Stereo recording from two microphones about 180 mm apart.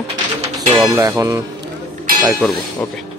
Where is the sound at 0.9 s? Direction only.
15° right (ahead or behind).